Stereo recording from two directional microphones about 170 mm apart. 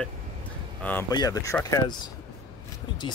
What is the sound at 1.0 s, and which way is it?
Speech, 20° left (ahead or behind).